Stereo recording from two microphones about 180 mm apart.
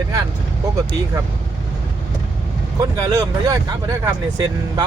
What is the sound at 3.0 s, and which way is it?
Speech, 20° right (ahead or behind).